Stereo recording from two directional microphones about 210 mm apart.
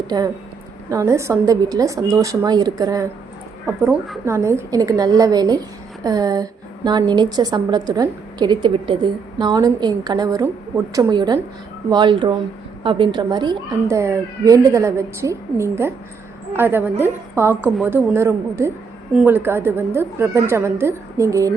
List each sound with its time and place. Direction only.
0.1 s a woman's voice: 20° right (ahead or behind)